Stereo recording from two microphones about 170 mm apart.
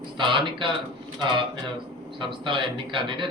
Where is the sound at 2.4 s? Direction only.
30° right (ahead or behind).